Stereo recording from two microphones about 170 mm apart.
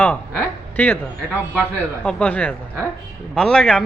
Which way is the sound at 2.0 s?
5° left (ahead or behind).